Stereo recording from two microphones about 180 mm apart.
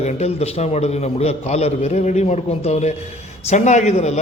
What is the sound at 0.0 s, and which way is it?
A man's voice, 35° left (ahead or behind).